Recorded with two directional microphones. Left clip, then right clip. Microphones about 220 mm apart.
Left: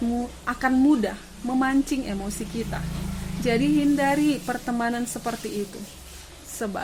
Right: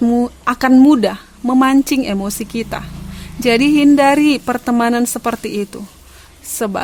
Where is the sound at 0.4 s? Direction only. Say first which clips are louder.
Right 10 dB; 50° right (ahead or behind).